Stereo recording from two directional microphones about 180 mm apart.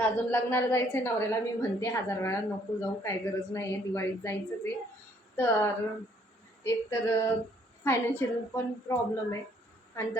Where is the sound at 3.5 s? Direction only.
15° left (ahead or behind).